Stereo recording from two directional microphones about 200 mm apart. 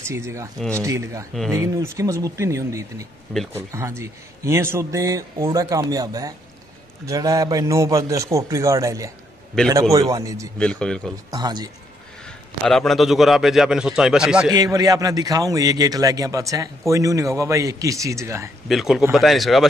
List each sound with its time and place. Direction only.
0.0 s a man's voice: 15° right (ahead or behind)
10.6 s a man's voice: 5° left (ahead or behind)
11.2 s speech: 20° right (ahead or behind)
12.3 s a man's voice: centre (ahead or behind)
14.5 s a man's voice: 15° right (ahead or behind)
18.7 s a man's voice: centre (ahead or behind)